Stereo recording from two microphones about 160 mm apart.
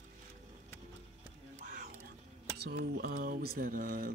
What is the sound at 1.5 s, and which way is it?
Whispering, 55° right (ahead or behind).